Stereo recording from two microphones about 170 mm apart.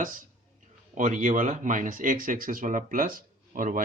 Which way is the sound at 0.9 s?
50° right (ahead or behind).